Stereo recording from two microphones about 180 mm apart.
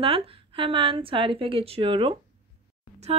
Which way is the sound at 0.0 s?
30° right (ahead or behind).